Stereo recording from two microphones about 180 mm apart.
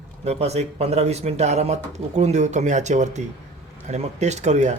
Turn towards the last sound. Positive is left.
turn(degrees=-40)  # may be behind; listen again after turning